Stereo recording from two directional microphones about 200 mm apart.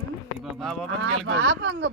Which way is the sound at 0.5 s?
Centre (ahead or behind).